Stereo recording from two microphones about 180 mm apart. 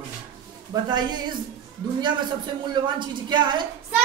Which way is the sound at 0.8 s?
25° right (ahead or behind).